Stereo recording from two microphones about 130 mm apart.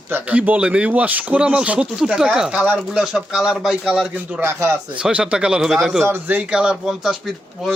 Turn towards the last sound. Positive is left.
turn(degrees=0)  # may be behind; listen again after turning